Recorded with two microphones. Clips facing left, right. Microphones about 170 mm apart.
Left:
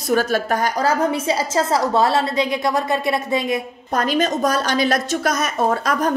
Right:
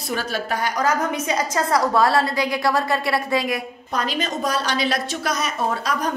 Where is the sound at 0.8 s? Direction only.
30° left (ahead or behind).